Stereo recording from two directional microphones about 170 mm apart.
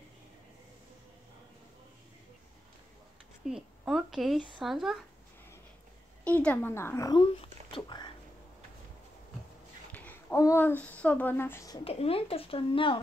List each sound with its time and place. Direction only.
3.4 s a woman's voice: centre (ahead or behind)
6.2 s speech: 10° left (ahead or behind); by 8.1 s 25° left (ahead or behind)
9.9 s a sound: 10° left (ahead or behind)
10.4 s speech: 15° left (ahead or behind)
11.8 s a woman's voice: 35° left (ahead or behind)